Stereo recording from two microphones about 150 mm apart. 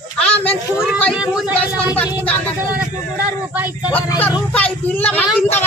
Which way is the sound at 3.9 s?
10° left (ahead or behind).